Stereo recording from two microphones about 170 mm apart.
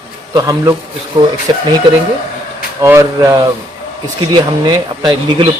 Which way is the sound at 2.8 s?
15° right (ahead or behind).